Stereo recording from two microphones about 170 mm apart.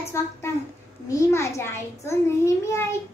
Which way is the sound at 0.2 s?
15° left (ahead or behind).